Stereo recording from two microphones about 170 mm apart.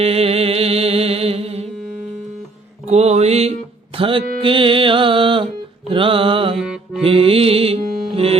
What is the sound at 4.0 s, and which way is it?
Mantra, 30° right (ahead or behind).